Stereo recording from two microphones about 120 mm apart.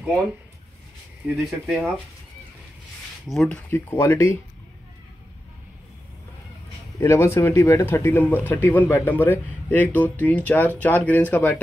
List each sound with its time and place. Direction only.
1.3 s speech: centre (ahead or behind)
3.3 s speech: 5° left (ahead or behind)
3.9 s speech: 20° left (ahead or behind)
7.0 s speech: 20° left (ahead or behind)